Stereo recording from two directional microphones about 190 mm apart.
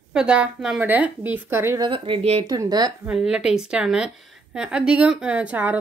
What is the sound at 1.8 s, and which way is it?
Speech, 30° right (ahead or behind).